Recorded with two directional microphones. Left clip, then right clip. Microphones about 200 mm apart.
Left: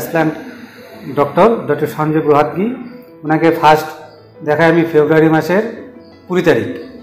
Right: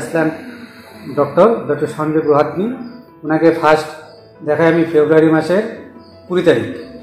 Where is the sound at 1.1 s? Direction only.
20° left (ahead or behind).